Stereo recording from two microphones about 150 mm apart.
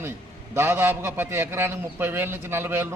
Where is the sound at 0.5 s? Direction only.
15° right (ahead or behind).